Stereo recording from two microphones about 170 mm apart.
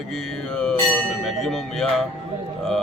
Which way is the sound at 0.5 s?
5° left (ahead or behind).